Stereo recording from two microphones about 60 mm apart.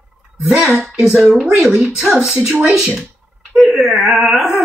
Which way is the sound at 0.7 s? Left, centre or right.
Centre.